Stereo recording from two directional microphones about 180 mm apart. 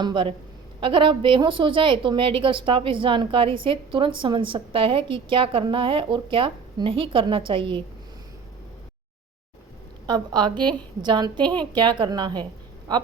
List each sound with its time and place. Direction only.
0.0 s a woman's voice: 25° right (ahead or behind)
10.1 s a woman's voice: 25° right (ahead or behind)